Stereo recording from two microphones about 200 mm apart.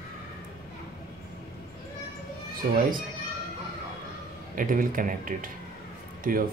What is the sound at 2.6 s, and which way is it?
Speech, 40° right (ahead or behind).